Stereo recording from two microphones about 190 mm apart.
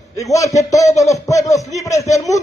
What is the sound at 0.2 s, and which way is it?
A man's voice, 15° left (ahead or behind).